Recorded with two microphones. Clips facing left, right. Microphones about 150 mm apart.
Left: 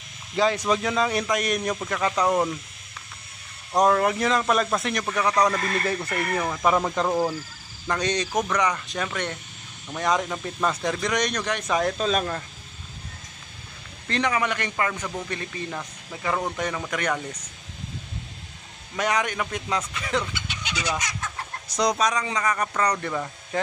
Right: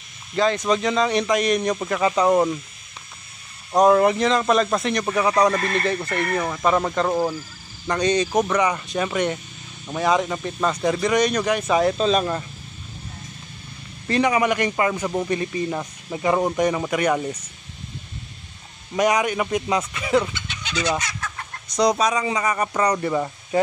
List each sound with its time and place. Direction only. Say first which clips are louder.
0.4 s a man's voice: right 2 dB; 10° left (ahead or behind)
3.7 s a man's voice: right 5 dB; 10° right (ahead or behind)
14.0 s a man's voice: right 6 dB; 10° right (ahead or behind)
18.9 s a man's voice: right 6 dB; 10° right (ahead or behind)
20.3 s fowl: right 4 dB; 10° left (ahead or behind)
21.6 s a man's voice: right 4 dB; centre (ahead or behind)